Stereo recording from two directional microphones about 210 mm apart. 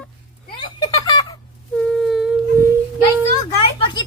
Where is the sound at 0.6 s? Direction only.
20° left (ahead or behind).